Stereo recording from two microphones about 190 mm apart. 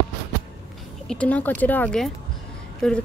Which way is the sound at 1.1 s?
5° left (ahead or behind).